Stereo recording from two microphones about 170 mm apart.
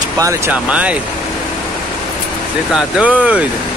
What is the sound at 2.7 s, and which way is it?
Speech, 5° right (ahead or behind).